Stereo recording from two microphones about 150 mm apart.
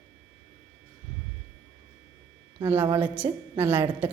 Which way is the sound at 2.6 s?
15° right (ahead or behind).